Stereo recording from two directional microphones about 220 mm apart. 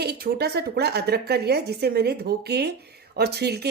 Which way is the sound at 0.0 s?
45° right (ahead or behind).